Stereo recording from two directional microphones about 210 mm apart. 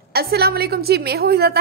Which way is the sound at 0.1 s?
45° right (ahead or behind).